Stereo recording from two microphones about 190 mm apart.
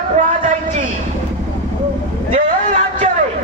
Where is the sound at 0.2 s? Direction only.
40° right (ahead or behind).